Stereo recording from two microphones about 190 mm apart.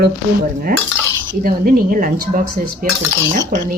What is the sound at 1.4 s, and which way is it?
Cutlery, 50° right (ahead or behind).